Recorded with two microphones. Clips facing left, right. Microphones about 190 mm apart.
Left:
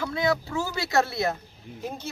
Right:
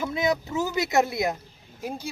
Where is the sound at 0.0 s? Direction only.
20° right (ahead or behind).